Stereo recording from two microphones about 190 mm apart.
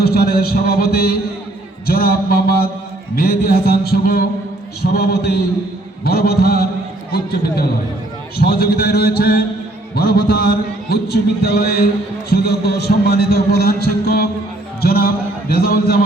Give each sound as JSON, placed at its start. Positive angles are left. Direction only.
{"t": 0.0, "sound": "a man's voice", "side_deg": 55}
{"t": 3.2, "sound": "music", "side_deg": 55}
{"t": 14.8, "sound": "a sound", "side_deg": 55}